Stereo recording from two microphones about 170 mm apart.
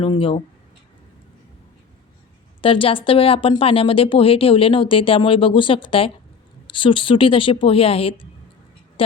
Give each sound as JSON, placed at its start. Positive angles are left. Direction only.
{"t": 0.0, "sound": "speech", "side_deg": 30}
{"t": 2.6, "sound": "speech", "side_deg": 30}
{"t": 9.0, "sound": "a sound", "side_deg": 30}